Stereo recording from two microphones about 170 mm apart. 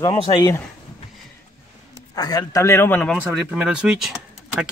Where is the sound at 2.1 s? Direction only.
25° left (ahead or behind).